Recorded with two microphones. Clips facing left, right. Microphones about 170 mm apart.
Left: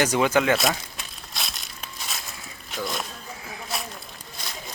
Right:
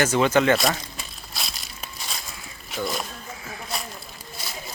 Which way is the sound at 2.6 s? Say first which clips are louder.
Right 2 dB; centre (ahead or behind).